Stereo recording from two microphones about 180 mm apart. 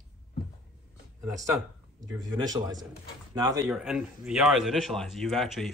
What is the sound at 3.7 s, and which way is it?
Speech, 5° right (ahead or behind).